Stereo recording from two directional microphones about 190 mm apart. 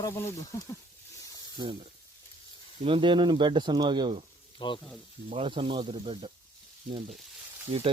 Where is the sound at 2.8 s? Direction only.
25° right (ahead or behind).